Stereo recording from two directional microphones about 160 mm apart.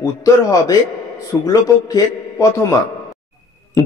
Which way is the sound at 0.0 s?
20° left (ahead or behind).